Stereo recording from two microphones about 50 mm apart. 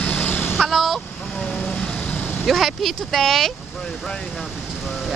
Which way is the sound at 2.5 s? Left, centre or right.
Centre.